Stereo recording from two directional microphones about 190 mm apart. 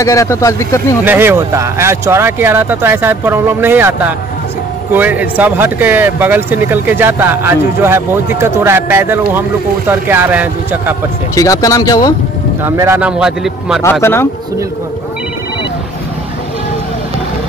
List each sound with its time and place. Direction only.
0.0 s speech: 15° left (ahead or behind)
1.0 s speech: 10° right (ahead or behind)
11.3 s speech: 20° left (ahead or behind)
12.6 s speech: 15° right (ahead or behind)
13.2 s a man's voice: 5° right (ahead or behind)
14.0 s speech: 10° left (ahead or behind)